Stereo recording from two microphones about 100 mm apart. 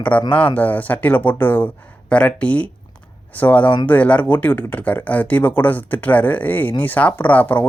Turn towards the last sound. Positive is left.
turn(degrees=15)  # may be behind; listen again after turning